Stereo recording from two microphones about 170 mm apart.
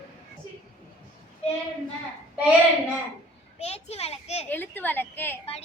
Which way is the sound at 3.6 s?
40° left (ahead or behind).